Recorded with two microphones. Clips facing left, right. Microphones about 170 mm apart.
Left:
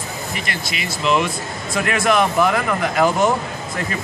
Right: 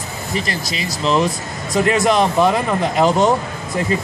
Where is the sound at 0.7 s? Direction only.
35° right (ahead or behind).